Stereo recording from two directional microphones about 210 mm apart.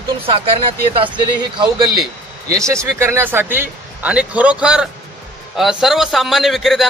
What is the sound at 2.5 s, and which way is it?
A man's voice, 15° right (ahead or behind).